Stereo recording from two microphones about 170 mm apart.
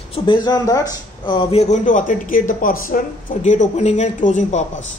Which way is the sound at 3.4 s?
40° left (ahead or behind).